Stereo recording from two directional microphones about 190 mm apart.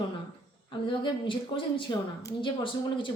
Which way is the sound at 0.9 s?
25° left (ahead or behind).